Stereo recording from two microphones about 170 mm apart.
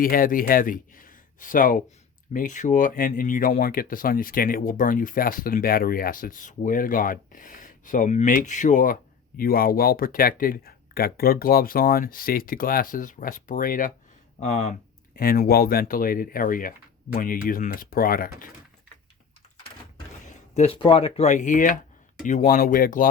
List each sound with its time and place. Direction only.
0.0 s speech: 55° left (ahead or behind)
20.5 s speech: 40° left (ahead or behind); by 23.0 s 55° left (ahead or behind)